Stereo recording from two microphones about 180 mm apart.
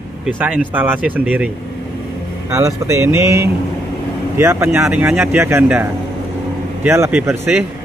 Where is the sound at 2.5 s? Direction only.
15° right (ahead or behind).